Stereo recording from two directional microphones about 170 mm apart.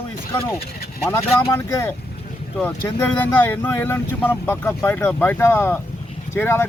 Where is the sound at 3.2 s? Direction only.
10° left (ahead or behind).